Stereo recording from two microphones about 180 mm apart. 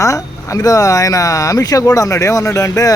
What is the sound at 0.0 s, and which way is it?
Speech, 15° left (ahead or behind).